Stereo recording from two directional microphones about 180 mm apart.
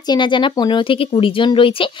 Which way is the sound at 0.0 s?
25° left (ahead or behind).